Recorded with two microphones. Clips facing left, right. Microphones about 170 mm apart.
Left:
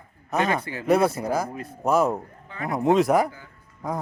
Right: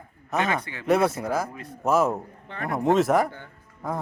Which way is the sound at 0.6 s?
35° left (ahead or behind).